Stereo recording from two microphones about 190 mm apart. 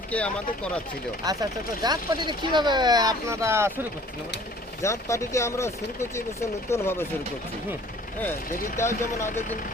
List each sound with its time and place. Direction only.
0.1 s speech: 5° left (ahead or behind)
1.2 s speech: 20° right (ahead or behind)
4.8 s speech: 15° left (ahead or behind)
8.5 s speech: 45° left (ahead or behind)